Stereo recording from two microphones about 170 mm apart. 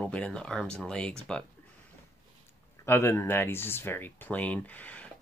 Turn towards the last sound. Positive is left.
turn(degrees=10)  # may be behind; listen again after turning